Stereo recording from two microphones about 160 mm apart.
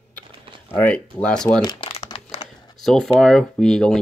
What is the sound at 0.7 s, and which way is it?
Speech, 10° left (ahead or behind).